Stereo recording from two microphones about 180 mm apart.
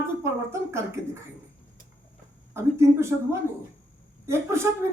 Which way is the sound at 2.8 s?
15° right (ahead or behind).